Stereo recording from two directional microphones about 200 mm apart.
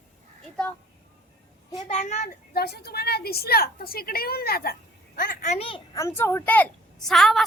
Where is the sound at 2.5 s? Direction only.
50° left (ahead or behind); by 5.8 s 30° left (ahead or behind).